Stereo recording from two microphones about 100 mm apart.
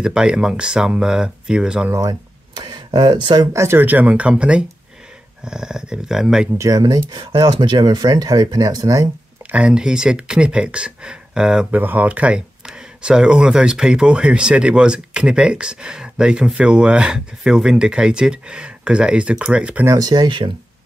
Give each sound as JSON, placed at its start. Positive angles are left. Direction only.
{"t": 0.0, "sound": "speech", "side_deg": -10}
{"t": 1.9, "sound": "speech", "side_deg": -35}
{"t": 3.5, "sound": "speech", "side_deg": -25}
{"t": 6.6, "sound": "speech", "side_deg": -40}
{"t": 7.1, "sound": "speech", "side_deg": -50}
{"t": 9.5, "sound": "speech", "side_deg": -10}
{"t": 20.0, "sound": "speech", "side_deg": -45}